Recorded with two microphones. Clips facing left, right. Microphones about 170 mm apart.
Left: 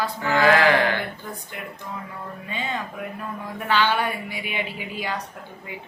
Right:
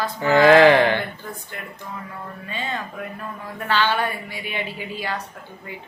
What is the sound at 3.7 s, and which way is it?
A woman's voice, 10° left (ahead or behind).